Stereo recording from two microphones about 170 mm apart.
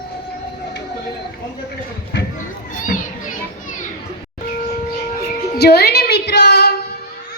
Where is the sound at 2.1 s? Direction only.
90° left.